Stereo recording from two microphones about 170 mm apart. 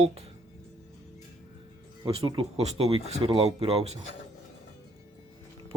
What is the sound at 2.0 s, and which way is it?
Speech, 30° right (ahead or behind).